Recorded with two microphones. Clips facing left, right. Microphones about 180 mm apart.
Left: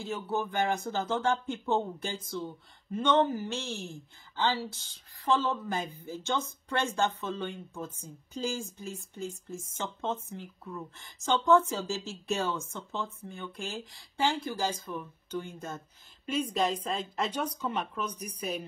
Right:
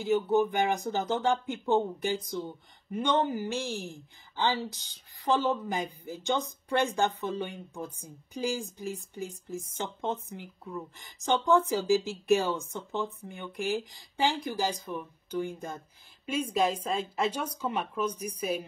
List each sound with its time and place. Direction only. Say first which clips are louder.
0.0 s speech: right 8 dB; 15° right (ahead or behind)